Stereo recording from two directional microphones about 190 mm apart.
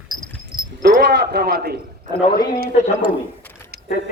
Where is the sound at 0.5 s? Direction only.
20° right (ahead or behind).